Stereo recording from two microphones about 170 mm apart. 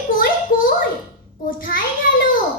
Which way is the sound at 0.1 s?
55° left (ahead or behind).